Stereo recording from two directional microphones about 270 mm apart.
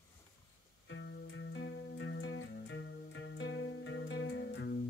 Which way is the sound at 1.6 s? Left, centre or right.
Left.